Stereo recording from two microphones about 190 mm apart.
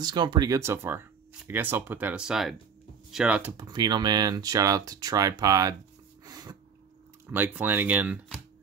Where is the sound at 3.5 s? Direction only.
20° right (ahead or behind).